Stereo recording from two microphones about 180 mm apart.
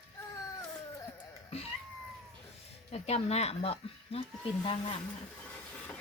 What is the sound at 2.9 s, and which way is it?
Speech, 35° left (ahead or behind).